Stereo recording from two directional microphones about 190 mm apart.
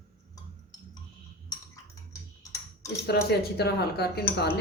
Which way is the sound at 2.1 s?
15° left (ahead or behind).